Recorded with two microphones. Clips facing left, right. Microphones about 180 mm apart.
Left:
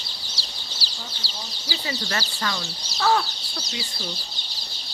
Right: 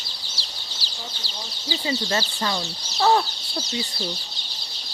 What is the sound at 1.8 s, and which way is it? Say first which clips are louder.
Speech: right 5 dB; 25° right (ahead or behind).